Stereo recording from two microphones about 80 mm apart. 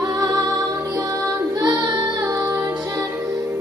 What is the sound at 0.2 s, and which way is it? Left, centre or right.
Music, right.